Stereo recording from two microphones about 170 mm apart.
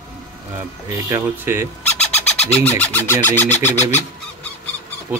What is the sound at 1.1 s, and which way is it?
Speech, 15° right (ahead or behind).